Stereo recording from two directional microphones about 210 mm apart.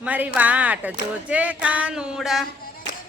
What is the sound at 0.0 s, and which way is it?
Speech, 5° right (ahead or behind).